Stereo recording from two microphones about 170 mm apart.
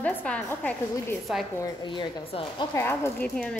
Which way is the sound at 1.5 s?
25° left (ahead or behind).